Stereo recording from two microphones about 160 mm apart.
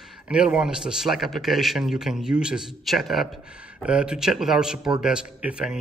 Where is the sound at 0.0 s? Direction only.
5° right (ahead or behind).